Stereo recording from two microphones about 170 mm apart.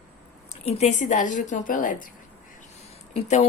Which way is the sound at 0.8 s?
45° left (ahead or behind).